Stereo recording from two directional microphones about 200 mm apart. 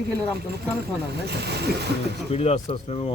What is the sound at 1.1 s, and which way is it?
Speech, 55° right (ahead or behind).